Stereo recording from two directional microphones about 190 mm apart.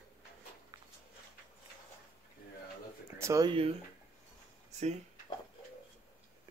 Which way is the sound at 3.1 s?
15° right (ahead or behind).